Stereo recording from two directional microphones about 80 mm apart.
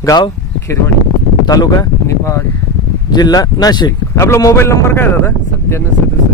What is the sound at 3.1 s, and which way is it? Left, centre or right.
Speech, left.